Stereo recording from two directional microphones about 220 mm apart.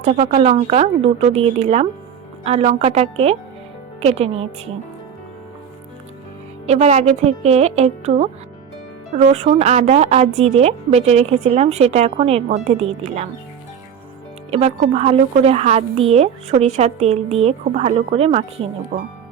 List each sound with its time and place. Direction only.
0.0 s a woman's voice: 30° right (ahead or behind)
6.7 s a woman's voice: 30° right (ahead or behind)
14.5 s a woman's voice: 25° right (ahead or behind)